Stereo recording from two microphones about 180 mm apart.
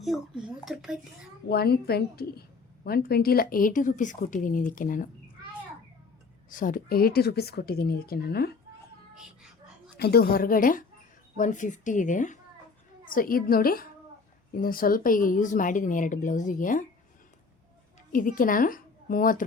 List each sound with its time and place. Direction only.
0.0 s speech: centre (ahead or behind)
1.5 s a woman's voice: 60° left (ahead or behind)
6.5 s speech: 50° left (ahead or behind)
9.1 s a sound: 5° right (ahead or behind)
10.0 s a woman's voice: 60° left (ahead or behind)
18.1 s a woman's voice: 50° left (ahead or behind)